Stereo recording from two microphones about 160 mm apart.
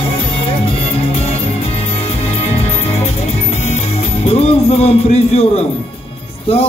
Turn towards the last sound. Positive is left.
turn(degrees=40)  # may be behind; listen again after turning